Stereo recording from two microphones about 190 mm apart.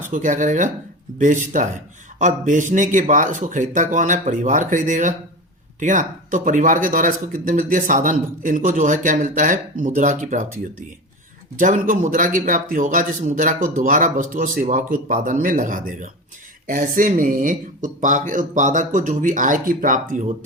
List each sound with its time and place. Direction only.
0.1 s speech: 40° right (ahead or behind)